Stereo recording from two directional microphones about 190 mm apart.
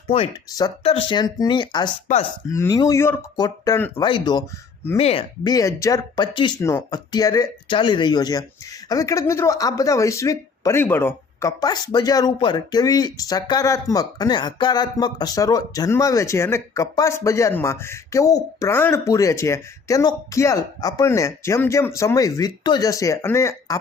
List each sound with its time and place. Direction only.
0.9 s speech: 25° left (ahead or behind)
4.0 s speech: 25° left (ahead or behind)